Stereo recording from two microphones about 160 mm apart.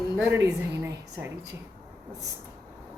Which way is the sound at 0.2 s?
15° right (ahead or behind).